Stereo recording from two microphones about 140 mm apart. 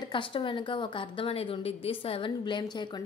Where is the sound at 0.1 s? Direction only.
40° left (ahead or behind).